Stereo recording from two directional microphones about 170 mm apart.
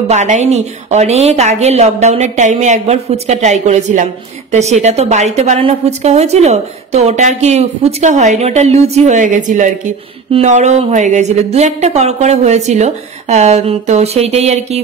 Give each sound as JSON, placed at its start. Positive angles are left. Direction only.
{"t": 0.1, "sound": "a woman's voice", "side_deg": -45}